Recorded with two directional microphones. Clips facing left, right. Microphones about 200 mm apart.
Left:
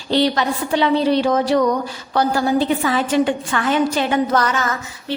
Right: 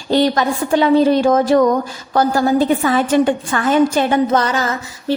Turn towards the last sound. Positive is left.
turn(degrees=-35)  # may be behind; listen again after turning